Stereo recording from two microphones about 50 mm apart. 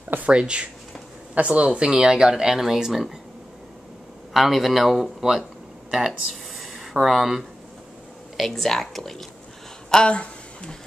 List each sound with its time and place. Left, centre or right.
0.3 s speech: right
4.3 s speech: centre
9.9 s speech: left